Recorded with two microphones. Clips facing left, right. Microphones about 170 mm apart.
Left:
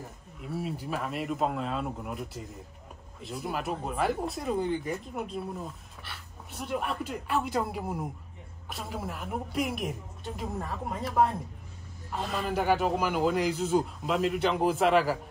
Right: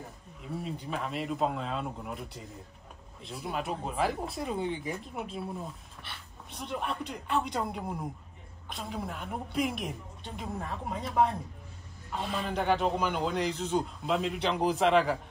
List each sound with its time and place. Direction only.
0.6 s speech: 5° left (ahead or behind)